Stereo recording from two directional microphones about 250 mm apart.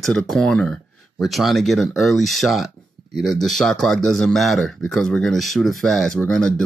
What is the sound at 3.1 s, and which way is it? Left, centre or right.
Speech, right.